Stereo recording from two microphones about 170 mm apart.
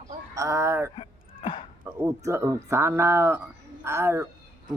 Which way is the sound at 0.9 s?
30° left (ahead or behind).